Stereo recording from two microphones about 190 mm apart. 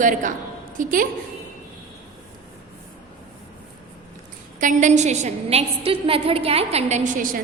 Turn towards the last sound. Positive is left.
turn(degrees=-45)  # may be behind; listen again after turning